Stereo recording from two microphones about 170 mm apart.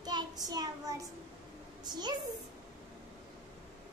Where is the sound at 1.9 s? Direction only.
25° right (ahead or behind).